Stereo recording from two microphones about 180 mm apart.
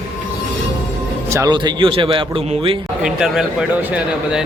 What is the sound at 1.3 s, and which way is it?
Speech, 20° right (ahead or behind).